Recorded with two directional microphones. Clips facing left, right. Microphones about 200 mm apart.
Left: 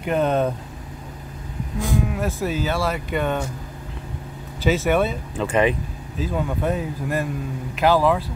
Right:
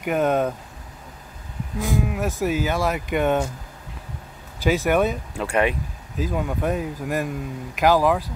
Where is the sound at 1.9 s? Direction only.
15° right (ahead or behind).